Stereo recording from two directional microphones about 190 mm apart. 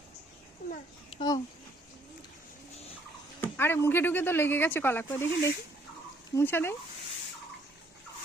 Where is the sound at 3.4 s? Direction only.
10° left (ahead or behind).